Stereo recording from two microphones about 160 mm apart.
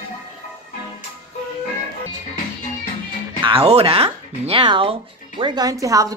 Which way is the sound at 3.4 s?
35° right (ahead or behind).